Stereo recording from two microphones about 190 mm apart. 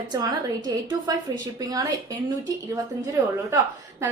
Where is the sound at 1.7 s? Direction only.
20° right (ahead or behind).